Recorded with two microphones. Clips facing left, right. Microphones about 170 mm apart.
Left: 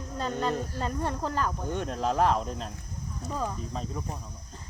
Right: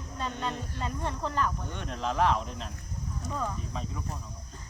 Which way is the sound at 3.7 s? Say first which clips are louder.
Left 2 dB; 40° left (ahead or behind).